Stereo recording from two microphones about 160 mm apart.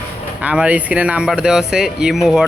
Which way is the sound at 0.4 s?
10° right (ahead or behind).